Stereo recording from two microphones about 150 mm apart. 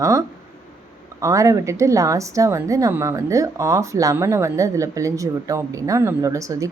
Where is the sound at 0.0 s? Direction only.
20° right (ahead or behind).